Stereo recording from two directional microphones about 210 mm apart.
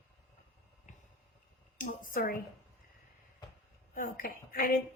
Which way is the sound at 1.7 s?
40° left (ahead or behind).